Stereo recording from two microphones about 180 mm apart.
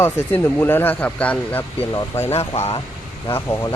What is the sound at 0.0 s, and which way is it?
Speech, 10° left (ahead or behind).